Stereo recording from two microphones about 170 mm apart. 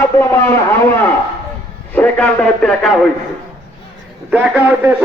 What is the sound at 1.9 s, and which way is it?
A man's voice, 10° left (ahead or behind).